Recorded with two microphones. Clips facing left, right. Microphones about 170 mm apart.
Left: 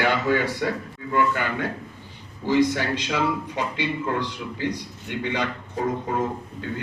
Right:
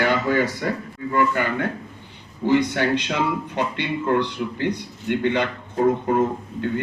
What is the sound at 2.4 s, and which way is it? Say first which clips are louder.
A man's voice: right 2 dB; 60° right (ahead or behind).